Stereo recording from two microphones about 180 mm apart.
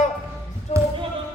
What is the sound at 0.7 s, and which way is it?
Basketball bounce, 35° left (ahead or behind).